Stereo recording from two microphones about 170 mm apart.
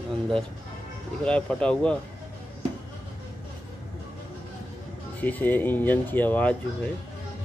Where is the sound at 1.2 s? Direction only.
5° left (ahead or behind).